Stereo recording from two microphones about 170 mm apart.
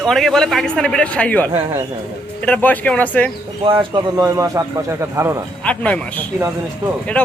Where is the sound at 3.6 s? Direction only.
30° right (ahead or behind).